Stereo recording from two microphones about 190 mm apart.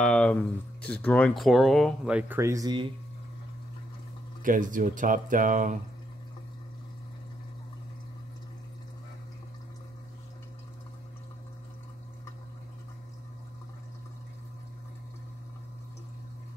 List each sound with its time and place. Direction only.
0.0 s a sound: 5° left (ahead or behind)
1.0 s speech: 5° left (ahead or behind); by 2.9 s 20° right (ahead or behind)
4.4 s speech: 45° right (ahead or behind)